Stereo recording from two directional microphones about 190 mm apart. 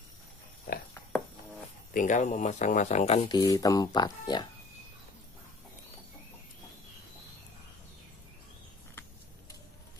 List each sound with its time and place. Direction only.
2.0 s speech: 40° left (ahead or behind)
3.3 s speech: 20° left (ahead or behind)